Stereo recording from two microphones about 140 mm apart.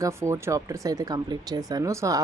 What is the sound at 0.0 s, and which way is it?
Speech, 20° right (ahead or behind).